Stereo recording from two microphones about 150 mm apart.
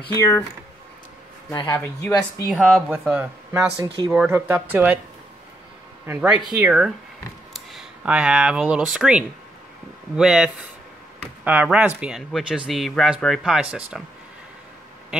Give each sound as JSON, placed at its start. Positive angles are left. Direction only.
{"t": 1.5, "sound": "speech", "side_deg": 25}
{"t": 1.8, "sound": "speech", "side_deg": 15}
{"t": 2.5, "sound": "speech", "side_deg": 0}
{"t": 3.5, "sound": "speech", "side_deg": -20}
{"t": 6.0, "sound": "speech", "side_deg": -10}